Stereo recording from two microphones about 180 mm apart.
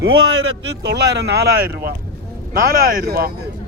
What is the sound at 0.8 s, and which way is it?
Speech, 70° right (ahead or behind).